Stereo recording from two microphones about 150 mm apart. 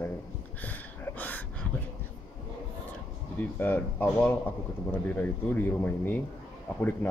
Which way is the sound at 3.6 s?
10° left (ahead or behind).